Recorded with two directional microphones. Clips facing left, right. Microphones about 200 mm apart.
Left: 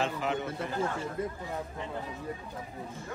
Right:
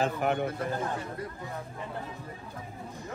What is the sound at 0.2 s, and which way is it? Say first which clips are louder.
Speech: right 4 dB; 55° right (ahead or behind).